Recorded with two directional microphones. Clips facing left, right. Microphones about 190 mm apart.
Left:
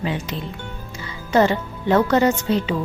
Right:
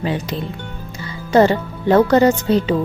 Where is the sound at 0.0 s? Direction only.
35° right (ahead or behind).